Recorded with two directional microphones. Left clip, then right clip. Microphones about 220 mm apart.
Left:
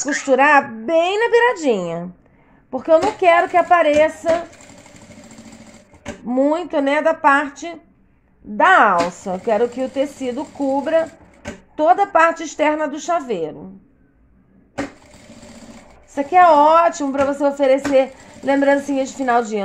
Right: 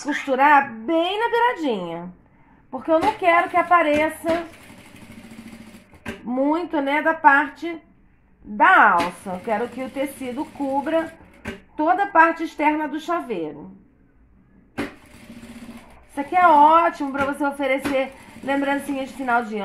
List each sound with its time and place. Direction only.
0.3 s a woman's voice: 55° left (ahead or behind)
6.2 s a woman's voice: 50° left (ahead or behind)
16.2 s a woman's voice: 50° left (ahead or behind)